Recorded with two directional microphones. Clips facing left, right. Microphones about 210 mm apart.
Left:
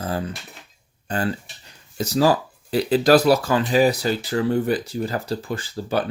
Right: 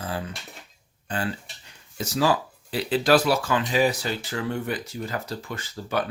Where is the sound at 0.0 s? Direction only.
40° left (ahead or behind).